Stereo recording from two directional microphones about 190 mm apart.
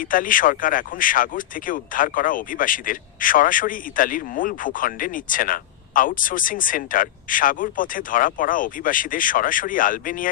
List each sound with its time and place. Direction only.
0.0 s speech: 45° left (ahead or behind)